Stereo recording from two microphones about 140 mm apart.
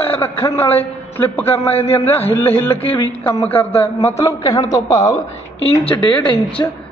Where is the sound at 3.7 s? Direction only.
45° left (ahead or behind).